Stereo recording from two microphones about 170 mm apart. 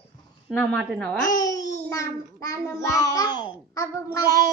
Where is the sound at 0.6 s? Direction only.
10° left (ahead or behind).